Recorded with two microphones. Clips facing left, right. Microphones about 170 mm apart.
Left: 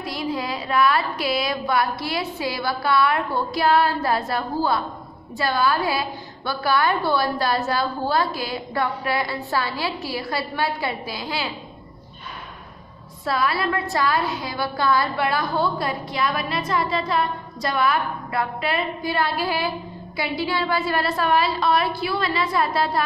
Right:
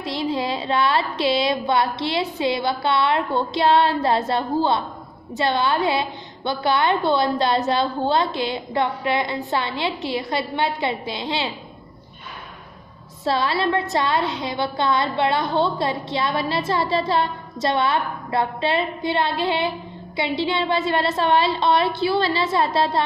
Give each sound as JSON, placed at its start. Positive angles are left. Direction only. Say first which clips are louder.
{"t": 0.0, "sound": "a woman's voice", "louder": "right 3 dB", "side_deg": -25}
{"t": 13.2, "sound": "a woman's voice", "louder": "right 2 dB", "side_deg": -25}